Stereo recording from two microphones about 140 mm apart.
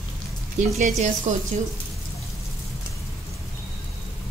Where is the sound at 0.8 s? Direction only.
60° right (ahead or behind).